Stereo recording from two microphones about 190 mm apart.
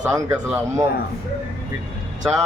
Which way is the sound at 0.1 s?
5° right (ahead or behind).